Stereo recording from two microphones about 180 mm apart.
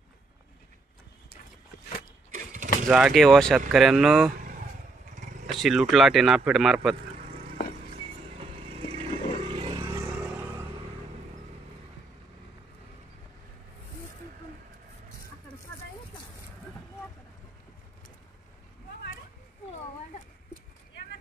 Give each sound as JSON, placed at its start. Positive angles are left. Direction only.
{"t": 2.3, "sound": "mechanisms", "side_deg": -45}
{"t": 2.9, "sound": "speech", "side_deg": 0}
{"t": 5.5, "sound": "speech", "side_deg": 0}
{"t": 8.4, "sound": "vehicle", "side_deg": -30}
{"t": 10.0, "sound": "vehicle", "side_deg": -10}